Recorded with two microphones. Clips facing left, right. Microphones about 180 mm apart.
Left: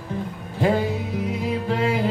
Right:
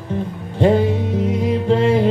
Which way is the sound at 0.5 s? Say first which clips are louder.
Right 6 dB; 25° right (ahead or behind).